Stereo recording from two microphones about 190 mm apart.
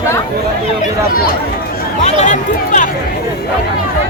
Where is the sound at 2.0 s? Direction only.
40° left (ahead or behind).